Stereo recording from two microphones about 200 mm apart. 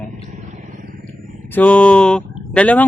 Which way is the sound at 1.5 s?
5° left (ahead or behind).